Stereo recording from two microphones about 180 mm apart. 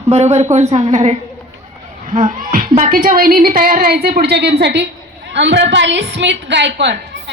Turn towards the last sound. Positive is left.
turn(degrees=-75)  # may be behind; listen again after turning